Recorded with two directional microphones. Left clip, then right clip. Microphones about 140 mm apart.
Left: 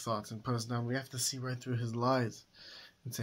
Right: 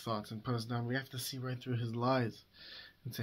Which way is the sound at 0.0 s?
30° left (ahead or behind).